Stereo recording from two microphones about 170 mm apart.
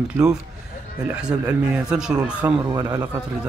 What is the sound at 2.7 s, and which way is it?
Speech, 25° right (ahead or behind).